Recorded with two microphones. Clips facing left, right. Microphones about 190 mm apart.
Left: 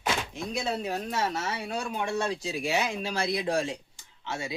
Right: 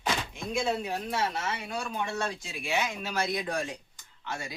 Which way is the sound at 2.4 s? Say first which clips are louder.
Left 3 dB; 40° left (ahead or behind).